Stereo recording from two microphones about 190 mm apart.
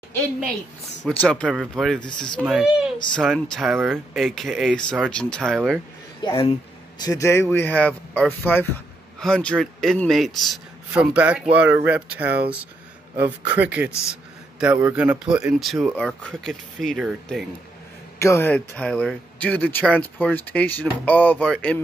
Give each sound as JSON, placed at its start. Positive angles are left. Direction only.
{"t": 1.2, "sound": "speech", "side_deg": 5}
{"t": 6.2, "sound": "speech", "side_deg": 30}
{"t": 7.0, "sound": "speech", "side_deg": 20}
{"t": 13.6, "sound": "speech", "side_deg": -5}
{"t": 18.2, "sound": "speech", "side_deg": 10}